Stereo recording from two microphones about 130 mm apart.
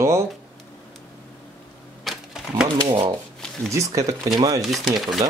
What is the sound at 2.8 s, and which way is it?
Speech, 35° right (ahead or behind).